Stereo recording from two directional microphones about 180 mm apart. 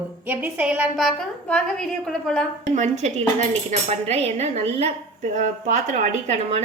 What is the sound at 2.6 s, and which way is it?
A woman's voice, 40° right (ahead or behind).